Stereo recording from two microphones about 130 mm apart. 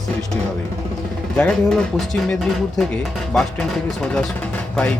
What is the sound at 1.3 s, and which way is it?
Speech, 5° left (ahead or behind).